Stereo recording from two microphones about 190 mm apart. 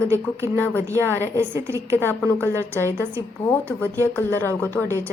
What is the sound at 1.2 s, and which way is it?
Speech, 15° right (ahead or behind).